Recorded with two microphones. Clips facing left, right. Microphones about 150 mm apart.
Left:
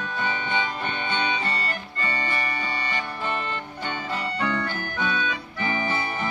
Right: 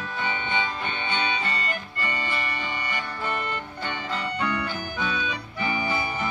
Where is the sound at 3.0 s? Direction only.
15° left (ahead or behind).